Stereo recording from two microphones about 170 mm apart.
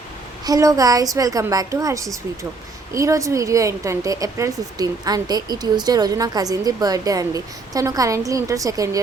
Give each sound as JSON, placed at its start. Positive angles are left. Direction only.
{"t": 0.4, "sound": "a woman's voice", "side_deg": -20}